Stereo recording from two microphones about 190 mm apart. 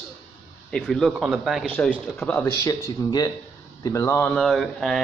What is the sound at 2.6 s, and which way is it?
Speech, 15° left (ahead or behind).